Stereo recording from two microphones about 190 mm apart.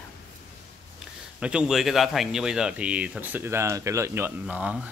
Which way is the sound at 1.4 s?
5° right (ahead or behind).